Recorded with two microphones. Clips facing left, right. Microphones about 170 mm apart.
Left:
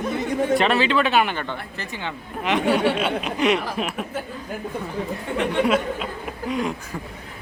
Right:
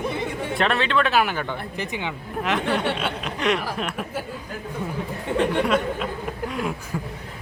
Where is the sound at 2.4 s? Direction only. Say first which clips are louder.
Left 4 dB; centre (ahead or behind).